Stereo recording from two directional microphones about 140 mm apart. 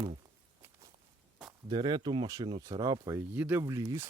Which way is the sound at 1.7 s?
30° right (ahead or behind).